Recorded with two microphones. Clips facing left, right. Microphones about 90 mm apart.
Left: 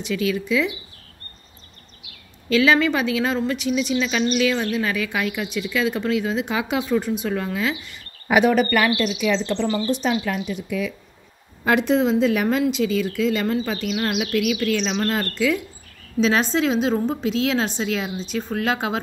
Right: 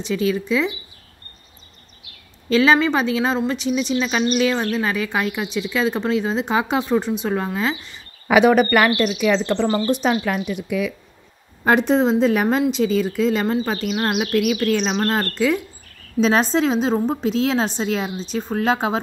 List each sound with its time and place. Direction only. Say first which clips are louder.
0.0 s speech: right 2 dB; 30° right (ahead or behind)
2.5 s speech: right 2 dB; 30° right (ahead or behind)
8.5 s speech: right 3 dB; 50° right (ahead or behind)
11.6 s speech: right 2 dB; 35° right (ahead or behind)